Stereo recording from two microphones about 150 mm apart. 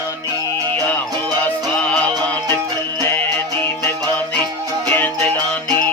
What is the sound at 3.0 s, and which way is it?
Music, 15° left (ahead or behind).